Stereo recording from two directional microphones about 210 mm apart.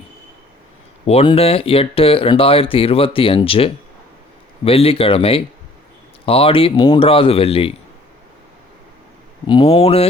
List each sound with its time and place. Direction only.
1.0 s speech: 25° left (ahead or behind)
9.5 s speech: 25° left (ahead or behind)